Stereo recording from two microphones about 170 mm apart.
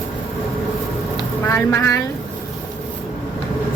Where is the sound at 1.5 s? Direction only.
15° left (ahead or behind).